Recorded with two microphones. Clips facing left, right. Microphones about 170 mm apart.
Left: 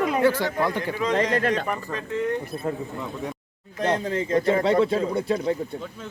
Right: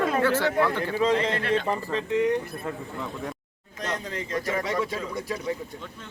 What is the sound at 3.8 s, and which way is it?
Speech, 50° left (ahead or behind).